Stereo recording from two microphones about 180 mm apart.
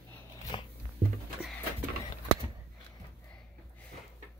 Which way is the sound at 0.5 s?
25° left (ahead or behind).